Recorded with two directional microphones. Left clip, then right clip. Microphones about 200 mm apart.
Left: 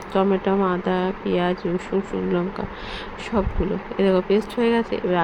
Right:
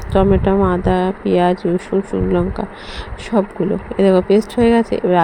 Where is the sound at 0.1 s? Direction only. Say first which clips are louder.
Right 6 dB; 20° right (ahead or behind).